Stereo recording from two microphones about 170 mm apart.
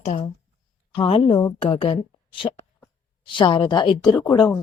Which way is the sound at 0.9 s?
30° left (ahead or behind).